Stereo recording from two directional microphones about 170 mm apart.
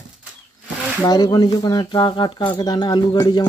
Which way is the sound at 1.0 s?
25° left (ahead or behind).